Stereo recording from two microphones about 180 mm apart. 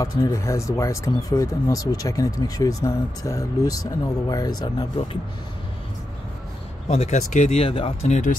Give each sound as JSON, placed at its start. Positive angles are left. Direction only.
{"t": 0.0, "sound": "speech", "side_deg": 20}
{"t": 6.9, "sound": "speech", "side_deg": 40}